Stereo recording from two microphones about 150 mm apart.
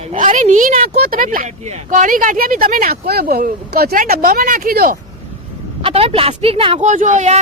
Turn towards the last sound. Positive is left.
turn(degrees=-50)  # may be behind; listen again after turning